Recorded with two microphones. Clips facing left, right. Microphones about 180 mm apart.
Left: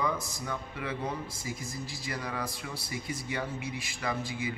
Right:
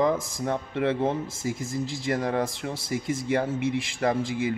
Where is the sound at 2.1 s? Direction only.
45° right (ahead or behind).